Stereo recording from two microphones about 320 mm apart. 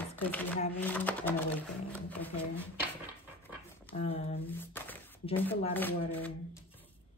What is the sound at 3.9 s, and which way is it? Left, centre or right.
Speech, centre.